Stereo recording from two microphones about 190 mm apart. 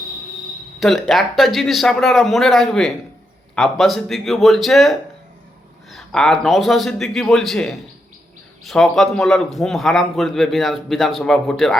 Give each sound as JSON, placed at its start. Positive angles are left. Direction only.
{"t": 0.8, "sound": "a man's voice", "side_deg": 0}